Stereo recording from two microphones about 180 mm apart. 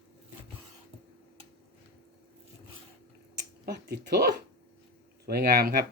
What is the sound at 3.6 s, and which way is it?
Speech, 65° right (ahead or behind).